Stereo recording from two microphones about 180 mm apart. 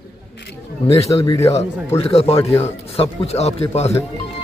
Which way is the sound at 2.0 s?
35° left (ahead or behind).